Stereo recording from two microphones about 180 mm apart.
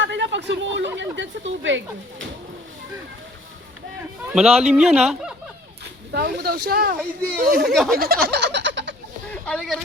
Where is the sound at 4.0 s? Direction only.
5° right (ahead or behind).